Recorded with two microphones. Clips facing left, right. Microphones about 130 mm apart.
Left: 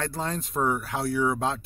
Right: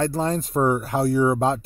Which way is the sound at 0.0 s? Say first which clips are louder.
Right 8 dB; 40° right (ahead or behind).